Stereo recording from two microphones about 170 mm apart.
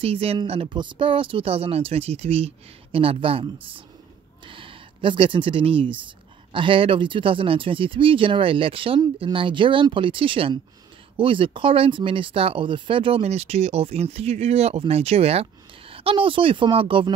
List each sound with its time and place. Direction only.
0.0 s speech: 35° right (ahead or behind)